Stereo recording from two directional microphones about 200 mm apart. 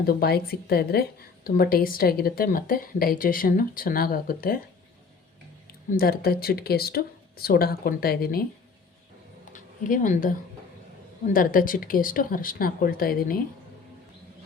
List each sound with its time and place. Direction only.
0.0 s a woman's voice: 50° left (ahead or behind)
5.9 s a woman's voice: 50° left (ahead or behind)
9.5 s a sound: 40° left (ahead or behind)
11.3 s a woman's voice: 45° left (ahead or behind)